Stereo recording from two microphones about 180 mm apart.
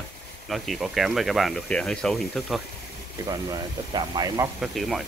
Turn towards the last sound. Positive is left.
turn(degrees=0)  # may be behind; listen again after turning